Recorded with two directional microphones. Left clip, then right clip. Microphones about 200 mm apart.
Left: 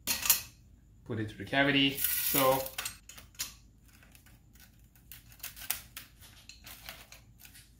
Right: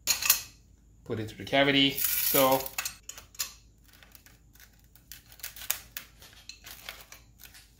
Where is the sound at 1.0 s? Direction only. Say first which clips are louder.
Right 3 dB; 45° right (ahead or behind).